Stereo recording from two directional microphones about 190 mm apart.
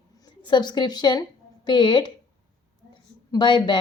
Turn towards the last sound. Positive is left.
turn(degrees=25)  # may be behind; listen again after turning